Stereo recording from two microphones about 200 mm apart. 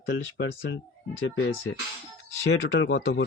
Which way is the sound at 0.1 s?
60° left (ahead or behind).